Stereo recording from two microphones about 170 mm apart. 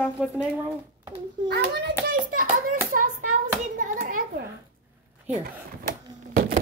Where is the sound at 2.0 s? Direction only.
55° right (ahead or behind).